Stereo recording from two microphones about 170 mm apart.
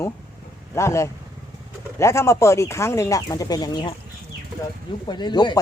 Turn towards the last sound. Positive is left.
turn(degrees=25)  # may be behind; listen again after turning